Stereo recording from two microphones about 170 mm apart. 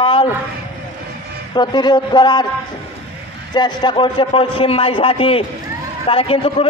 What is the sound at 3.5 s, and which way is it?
A man's voice, 25° left (ahead or behind).